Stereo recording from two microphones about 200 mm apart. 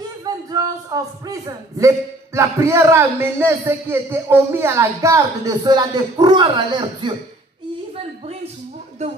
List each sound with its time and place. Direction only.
0.2 s speech: 20° right (ahead or behind)